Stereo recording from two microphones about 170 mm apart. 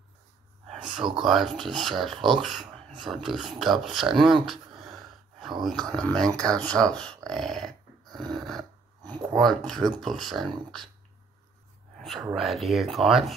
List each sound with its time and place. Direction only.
0.7 s speech: centre (ahead or behind)
7.2 s dog: centre (ahead or behind)
9.0 s a sound: 25° right (ahead or behind)
9.4 s speech: centre (ahead or behind)
12.0 s speech: centre (ahead or behind)